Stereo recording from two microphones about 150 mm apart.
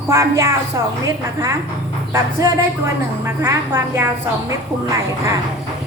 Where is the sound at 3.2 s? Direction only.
20° right (ahead or behind).